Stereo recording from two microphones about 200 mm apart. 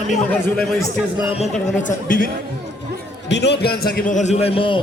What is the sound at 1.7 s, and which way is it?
Speech, 40° left (ahead or behind).